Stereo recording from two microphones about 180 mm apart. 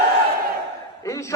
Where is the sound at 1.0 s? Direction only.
15° left (ahead or behind).